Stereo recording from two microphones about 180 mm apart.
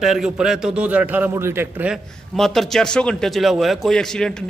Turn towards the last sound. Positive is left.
turn(degrees=5)  # may be behind; listen again after turning